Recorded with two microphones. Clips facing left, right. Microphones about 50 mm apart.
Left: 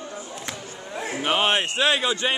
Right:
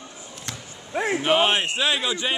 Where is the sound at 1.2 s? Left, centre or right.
Centre.